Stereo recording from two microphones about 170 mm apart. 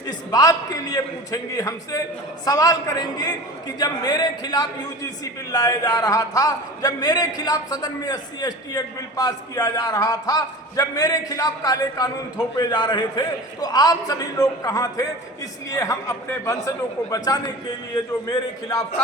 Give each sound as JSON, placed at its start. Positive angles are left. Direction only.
{"t": 0.1, "sound": "a man's voice", "side_deg": 25}